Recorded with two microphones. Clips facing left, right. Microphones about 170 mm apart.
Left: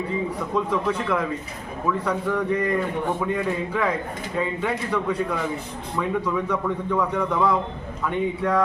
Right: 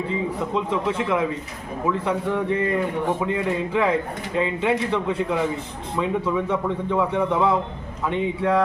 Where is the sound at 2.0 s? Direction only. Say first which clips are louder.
Even; 25° right (ahead or behind).